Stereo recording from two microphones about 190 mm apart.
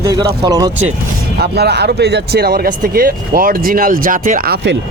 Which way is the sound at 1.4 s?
60° right (ahead or behind).